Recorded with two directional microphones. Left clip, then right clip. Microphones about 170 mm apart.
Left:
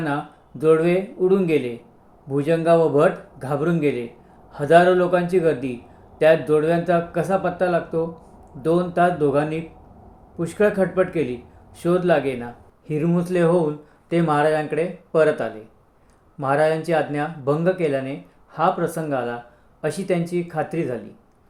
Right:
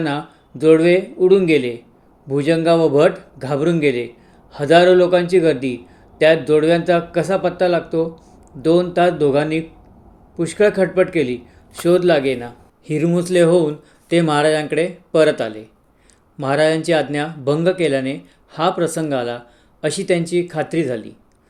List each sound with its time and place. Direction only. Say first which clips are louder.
0.6 s speech: right 5 dB; 25° right (ahead or behind)